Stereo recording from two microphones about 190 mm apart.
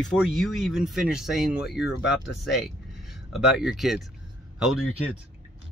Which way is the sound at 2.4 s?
Centre (ahead or behind).